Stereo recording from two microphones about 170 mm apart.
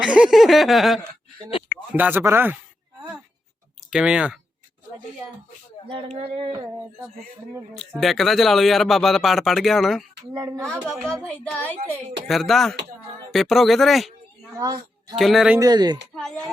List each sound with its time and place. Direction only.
0.0 s speech: 5° right (ahead or behind)
3.8 s speech: 5° right (ahead or behind)
5.9 s speech: 35° right (ahead or behind)
7.8 s speech: centre (ahead or behind)
10.3 s speech: 15° right (ahead or behind)
10.8 s speech: centre (ahead or behind)
14.6 s a woman's voice: 25° right (ahead or behind)
15.1 s speech: centre (ahead or behind)
15.5 s speech: 25° right (ahead or behind)